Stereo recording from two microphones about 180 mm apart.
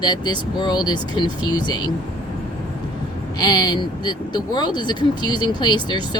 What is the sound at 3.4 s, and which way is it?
Speech, 20° left (ahead or behind).